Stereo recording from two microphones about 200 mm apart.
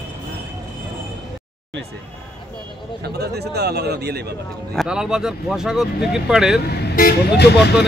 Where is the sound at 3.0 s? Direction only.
55° right (ahead or behind).